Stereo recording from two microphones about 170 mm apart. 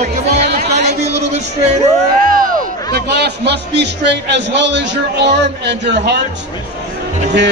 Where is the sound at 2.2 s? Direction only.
55° right (ahead or behind); by 5.3 s 90° right.